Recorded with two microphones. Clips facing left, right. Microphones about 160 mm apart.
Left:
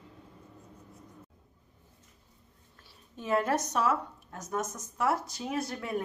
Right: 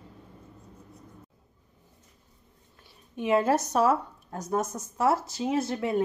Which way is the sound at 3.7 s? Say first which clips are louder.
Right 5 dB; 35° right (ahead or behind).